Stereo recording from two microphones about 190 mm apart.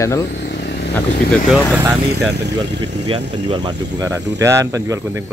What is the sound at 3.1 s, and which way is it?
Speech, 25° right (ahead or behind).